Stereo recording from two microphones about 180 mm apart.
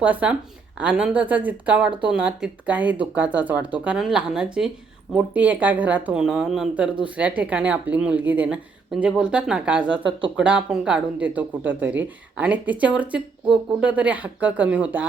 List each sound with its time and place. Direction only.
0.0 s speech: 10° right (ahead or behind)
10.0 s speech: 30° right (ahead or behind)
10.3 s speech: 5° right (ahead or behind)